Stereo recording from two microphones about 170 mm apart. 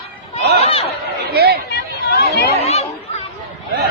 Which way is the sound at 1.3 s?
65° right (ahead or behind).